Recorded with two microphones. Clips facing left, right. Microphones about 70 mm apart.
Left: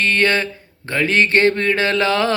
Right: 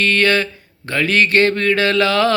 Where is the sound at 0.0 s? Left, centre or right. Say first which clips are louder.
Right 1 dB; left.